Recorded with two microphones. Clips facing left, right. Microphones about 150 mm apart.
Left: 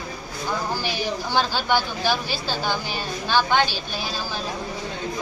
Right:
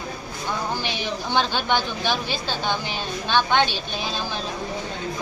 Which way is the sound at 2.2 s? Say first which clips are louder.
Even; 20° right (ahead or behind).